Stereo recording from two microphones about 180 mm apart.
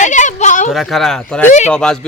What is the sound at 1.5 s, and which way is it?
Speech, 40° left (ahead or behind).